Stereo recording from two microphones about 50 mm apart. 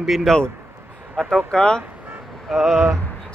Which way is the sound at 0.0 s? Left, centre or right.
Centre.